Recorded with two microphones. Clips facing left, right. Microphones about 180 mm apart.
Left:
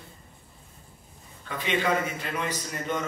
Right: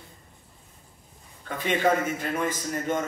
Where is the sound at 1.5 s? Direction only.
50° right (ahead or behind).